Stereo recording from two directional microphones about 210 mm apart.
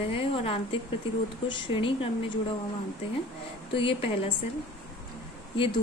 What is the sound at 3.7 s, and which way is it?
Speech, 25° left (ahead or behind).